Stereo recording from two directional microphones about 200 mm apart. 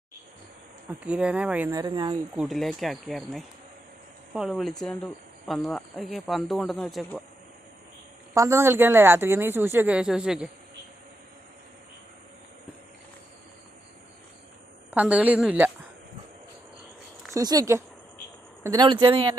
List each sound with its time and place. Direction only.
0.9 s speech: 5° right (ahead or behind)
1.7 s speech: 20° right (ahead or behind)
2.3 s speech: 5° right (ahead or behind)
8.3 s speech: 15° right (ahead or behind)
14.8 s speech: 5° right (ahead or behind)
17.3 s speech: 20° right (ahead or behind)